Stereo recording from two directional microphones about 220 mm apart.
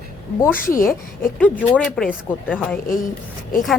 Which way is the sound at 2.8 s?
40° left (ahead or behind).